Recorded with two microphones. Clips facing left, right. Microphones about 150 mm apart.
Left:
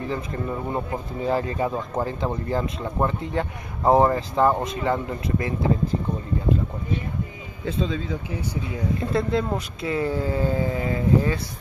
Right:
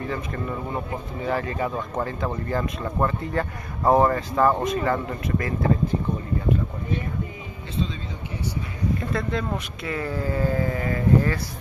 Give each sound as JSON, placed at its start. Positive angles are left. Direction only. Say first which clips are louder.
{"t": 0.1, "sound": "speech", "louder": "left 1 dB", "side_deg": 25}
{"t": 9.1, "sound": "speech", "louder": "left 3 dB", "side_deg": 25}